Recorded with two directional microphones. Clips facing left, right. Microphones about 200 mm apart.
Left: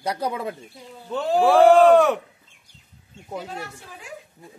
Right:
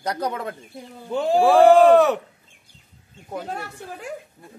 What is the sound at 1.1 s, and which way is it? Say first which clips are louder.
Speech: right 2 dB; 15° right (ahead or behind).